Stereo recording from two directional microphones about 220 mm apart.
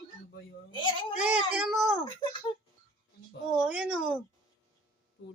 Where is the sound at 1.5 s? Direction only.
Centre (ahead or behind).